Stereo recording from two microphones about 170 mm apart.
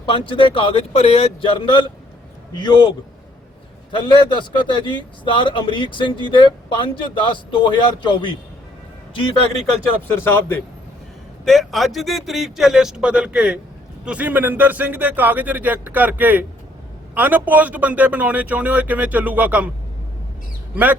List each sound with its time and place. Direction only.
0.0 s a man's voice: 30° left (ahead or behind)
3.9 s a man's voice: 30° left (ahead or behind)
10.2 s a man's voice: 15° left (ahead or behind)
11.4 s a man's voice: centre (ahead or behind)